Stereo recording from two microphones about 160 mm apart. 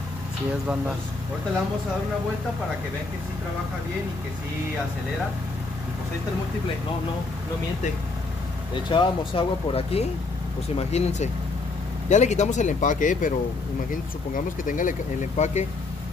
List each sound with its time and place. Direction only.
8.9 s speech: 30° left (ahead or behind); by 13.3 s 55° left (ahead or behind)
14.3 s speech: 55° left (ahead or behind)